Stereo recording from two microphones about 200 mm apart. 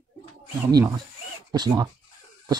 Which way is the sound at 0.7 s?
15° right (ahead or behind).